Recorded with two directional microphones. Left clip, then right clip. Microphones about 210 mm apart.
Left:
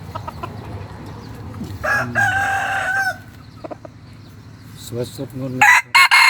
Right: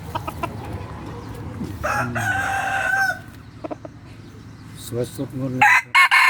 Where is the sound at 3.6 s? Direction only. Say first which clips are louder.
Right 1 dB; 5° right (ahead or behind).